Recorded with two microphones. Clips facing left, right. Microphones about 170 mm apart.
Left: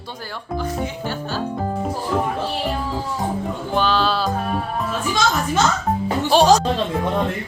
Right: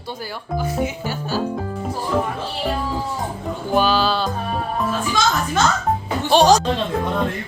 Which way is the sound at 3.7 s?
5° right (ahead or behind).